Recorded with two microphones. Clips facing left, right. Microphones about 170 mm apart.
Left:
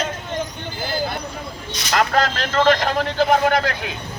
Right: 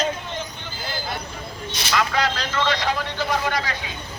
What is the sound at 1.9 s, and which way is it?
A man's voice, 50° left (ahead or behind).